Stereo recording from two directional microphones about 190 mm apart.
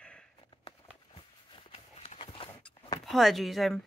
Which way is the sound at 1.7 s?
35° left (ahead or behind).